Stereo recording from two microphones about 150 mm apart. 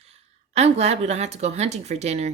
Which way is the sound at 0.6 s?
45° right (ahead or behind).